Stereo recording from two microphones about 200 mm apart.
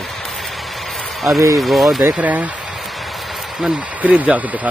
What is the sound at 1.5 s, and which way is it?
Speech, centre (ahead or behind).